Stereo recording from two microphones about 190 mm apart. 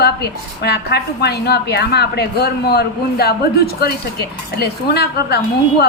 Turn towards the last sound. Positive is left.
turn(degrees=55)  # may be behind; listen again after turning